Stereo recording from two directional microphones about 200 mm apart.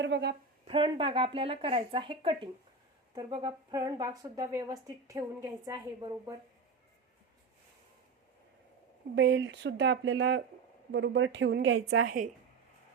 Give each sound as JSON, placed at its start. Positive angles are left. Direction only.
{"t": 0.0, "sound": "speech", "side_deg": -60}
{"t": 0.7, "sound": "a woman's voice", "side_deg": -25}
{"t": 9.1, "sound": "speech", "side_deg": -65}
{"t": 12.0, "sound": "a woman's voice", "side_deg": -40}